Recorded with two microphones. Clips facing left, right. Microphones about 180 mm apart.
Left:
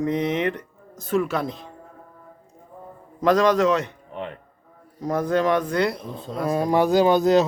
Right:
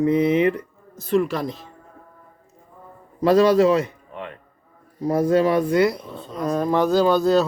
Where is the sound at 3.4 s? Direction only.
5° right (ahead or behind).